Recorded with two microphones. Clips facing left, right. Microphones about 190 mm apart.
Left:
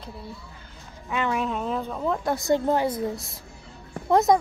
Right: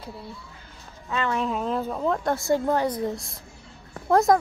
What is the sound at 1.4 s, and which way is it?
Speech, centre (ahead or behind).